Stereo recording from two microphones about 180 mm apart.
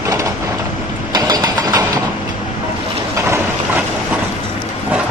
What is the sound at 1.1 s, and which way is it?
Vehicle, 20° right (ahead or behind).